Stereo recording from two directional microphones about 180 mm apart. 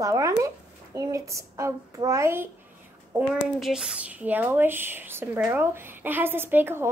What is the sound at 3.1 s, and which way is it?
Speech, 5° right (ahead or behind).